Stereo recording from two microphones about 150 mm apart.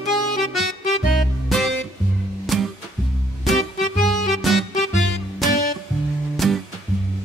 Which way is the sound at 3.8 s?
55° left (ahead or behind).